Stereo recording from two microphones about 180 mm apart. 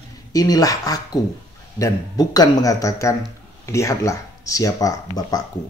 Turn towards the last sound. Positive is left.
turn(degrees=20)  # may be behind; listen again after turning